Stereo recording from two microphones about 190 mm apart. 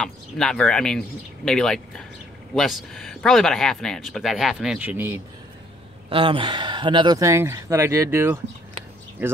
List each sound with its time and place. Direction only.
0.0 s speech: 5° left (ahead or behind)
6.0 s speech: 25° right (ahead or behind)